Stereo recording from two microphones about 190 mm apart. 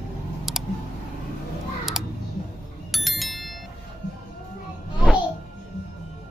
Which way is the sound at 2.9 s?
Centre (ahead or behind).